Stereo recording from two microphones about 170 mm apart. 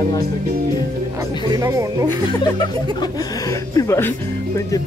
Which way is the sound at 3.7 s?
15° left (ahead or behind).